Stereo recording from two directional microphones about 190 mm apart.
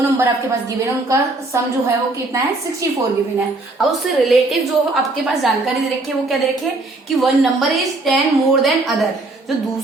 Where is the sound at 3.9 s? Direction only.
Centre (ahead or behind).